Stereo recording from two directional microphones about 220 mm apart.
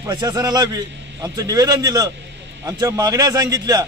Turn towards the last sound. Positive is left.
turn(degrees=-15)  # may be behind; listen again after turning